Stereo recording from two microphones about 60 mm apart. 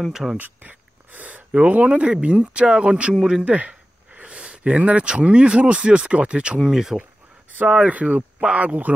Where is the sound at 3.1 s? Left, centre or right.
Centre.